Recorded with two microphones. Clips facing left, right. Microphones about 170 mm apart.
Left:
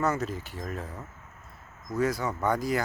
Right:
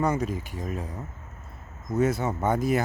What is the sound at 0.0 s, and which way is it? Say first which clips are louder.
Speech: right 2 dB; 15° right (ahead or behind).